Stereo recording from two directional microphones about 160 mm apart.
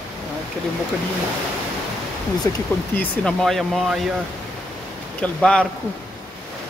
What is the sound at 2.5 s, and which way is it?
Speech, 20° left (ahead or behind).